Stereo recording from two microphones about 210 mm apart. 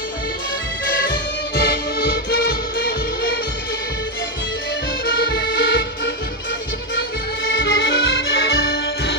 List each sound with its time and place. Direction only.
1.5 s music: 50° left (ahead or behind)
5.3 s music: 45° left (ahead or behind)
7.4 s music: 55° left (ahead or behind)